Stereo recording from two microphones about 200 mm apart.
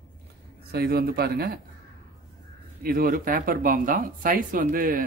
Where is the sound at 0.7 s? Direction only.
50° right (ahead or behind).